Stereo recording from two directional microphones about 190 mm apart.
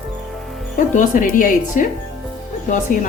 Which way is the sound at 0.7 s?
45° left (ahead or behind).